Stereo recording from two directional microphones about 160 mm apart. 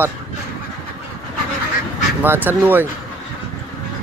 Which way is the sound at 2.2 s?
15° right (ahead or behind).